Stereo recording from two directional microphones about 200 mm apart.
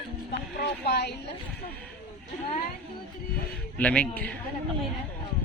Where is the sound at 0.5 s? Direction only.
55° left (ahead or behind).